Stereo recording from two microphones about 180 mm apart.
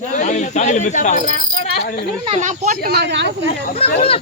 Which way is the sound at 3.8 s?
35° left (ahead or behind).